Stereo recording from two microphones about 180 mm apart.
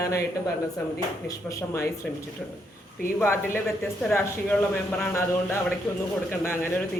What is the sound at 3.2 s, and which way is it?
A man's voice, 15° left (ahead or behind).